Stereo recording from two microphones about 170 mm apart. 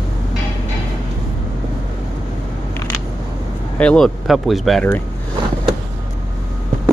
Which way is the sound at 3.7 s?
5° left (ahead or behind).